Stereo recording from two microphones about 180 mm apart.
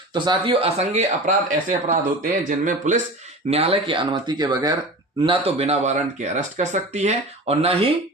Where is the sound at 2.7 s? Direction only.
45° right (ahead or behind).